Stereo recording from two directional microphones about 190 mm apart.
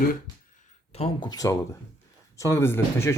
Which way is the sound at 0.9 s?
25° left (ahead or behind).